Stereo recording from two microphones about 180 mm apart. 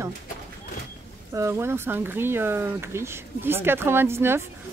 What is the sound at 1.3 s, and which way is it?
Speech, 15° right (ahead or behind).